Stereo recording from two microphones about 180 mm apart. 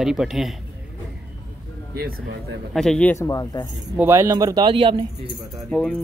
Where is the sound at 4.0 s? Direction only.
15° right (ahead or behind); by 5.3 s 30° right (ahead or behind).